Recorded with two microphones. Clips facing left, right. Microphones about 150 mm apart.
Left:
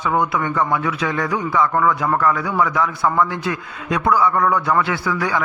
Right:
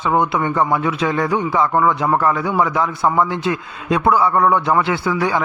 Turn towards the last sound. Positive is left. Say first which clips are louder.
# right 3 dB
turn(degrees=-25)  # may be behind; listen again after turning